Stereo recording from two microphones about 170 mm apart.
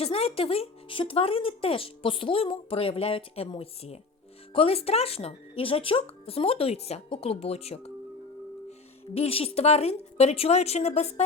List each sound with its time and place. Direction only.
0.0 s speech: 35° left (ahead or behind)
9.1 s speech: 35° left (ahead or behind)